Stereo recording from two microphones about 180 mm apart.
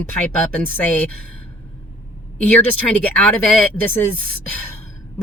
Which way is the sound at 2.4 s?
10° left (ahead or behind).